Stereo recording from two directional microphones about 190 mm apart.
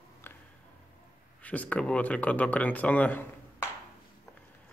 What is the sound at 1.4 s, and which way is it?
Speech, 5° left (ahead or behind).